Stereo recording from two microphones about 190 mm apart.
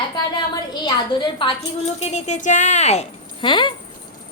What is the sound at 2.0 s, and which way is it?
A woman's voice, 35° left (ahead or behind).